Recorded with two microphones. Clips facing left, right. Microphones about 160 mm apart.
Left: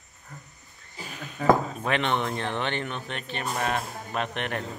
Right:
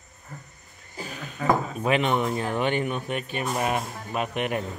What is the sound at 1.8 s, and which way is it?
Speech, 5° right (ahead or behind).